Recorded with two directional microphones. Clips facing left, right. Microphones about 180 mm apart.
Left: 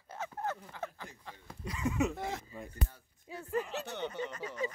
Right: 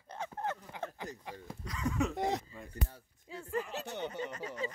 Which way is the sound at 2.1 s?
20° right (ahead or behind).